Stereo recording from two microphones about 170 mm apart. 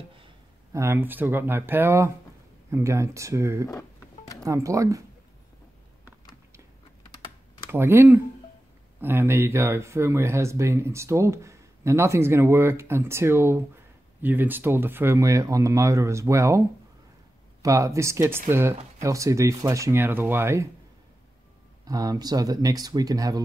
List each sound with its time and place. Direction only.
0.7 s speech: 15° right (ahead or behind)
7.7 s speech: 15° right (ahead or behind)
21.8 s speech: 20° right (ahead or behind)